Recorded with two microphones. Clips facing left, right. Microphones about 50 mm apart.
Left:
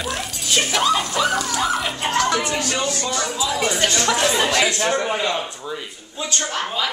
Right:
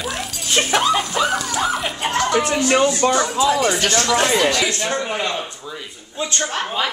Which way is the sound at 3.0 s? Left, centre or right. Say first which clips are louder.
Right 7 dB; right.